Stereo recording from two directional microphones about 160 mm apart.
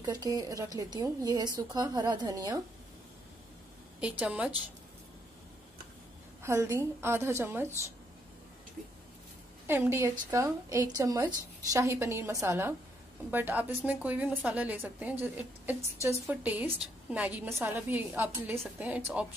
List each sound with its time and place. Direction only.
0.0 s a woman's voice: 25° right (ahead or behind)
4.2 s a woman's voice: 10° right (ahead or behind)
6.4 s a woman's voice: 20° right (ahead or behind)
9.7 s a woman's voice: 15° right (ahead or behind)